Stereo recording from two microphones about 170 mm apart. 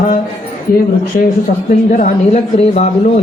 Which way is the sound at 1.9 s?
45° left (ahead or behind).